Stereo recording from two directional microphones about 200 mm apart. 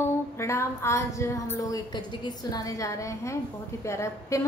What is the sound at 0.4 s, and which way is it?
A woman's voice, 15° left (ahead or behind).